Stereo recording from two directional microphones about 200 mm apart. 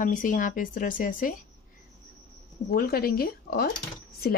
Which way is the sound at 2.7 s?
50° left (ahead or behind).